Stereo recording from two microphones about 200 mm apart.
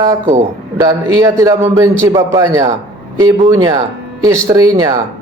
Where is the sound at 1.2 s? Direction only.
15° right (ahead or behind).